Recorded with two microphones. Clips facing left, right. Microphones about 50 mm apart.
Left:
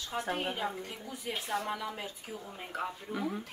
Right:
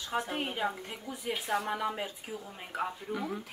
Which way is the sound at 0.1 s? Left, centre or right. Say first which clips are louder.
Right 1 dB; right.